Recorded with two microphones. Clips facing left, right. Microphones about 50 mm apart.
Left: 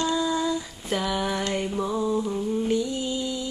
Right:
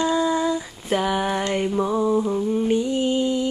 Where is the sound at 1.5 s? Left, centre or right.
Right.